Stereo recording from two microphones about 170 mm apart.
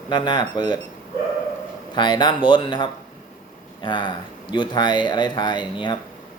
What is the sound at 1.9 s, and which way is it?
Speech, 25° left (ahead or behind).